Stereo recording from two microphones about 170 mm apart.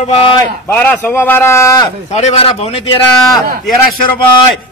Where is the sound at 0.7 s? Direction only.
10° left (ahead or behind).